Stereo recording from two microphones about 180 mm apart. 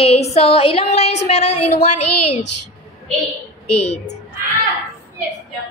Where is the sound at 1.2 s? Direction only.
40° left (ahead or behind).